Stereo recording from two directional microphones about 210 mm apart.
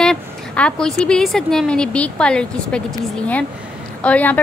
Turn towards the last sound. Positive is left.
turn(degrees=5)  # may be behind; listen again after turning